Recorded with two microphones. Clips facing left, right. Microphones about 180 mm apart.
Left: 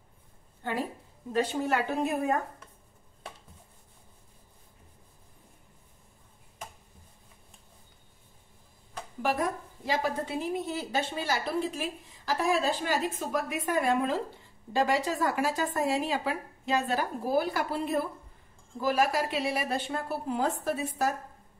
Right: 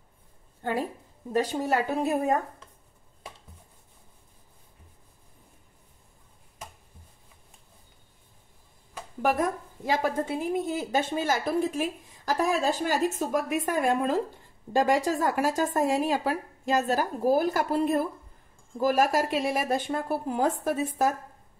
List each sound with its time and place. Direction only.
1.4 s speech: 40° right (ahead or behind)
9.8 s a woman's voice: 50° right (ahead or behind)